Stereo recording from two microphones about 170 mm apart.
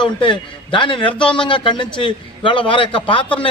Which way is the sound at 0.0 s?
30° left (ahead or behind).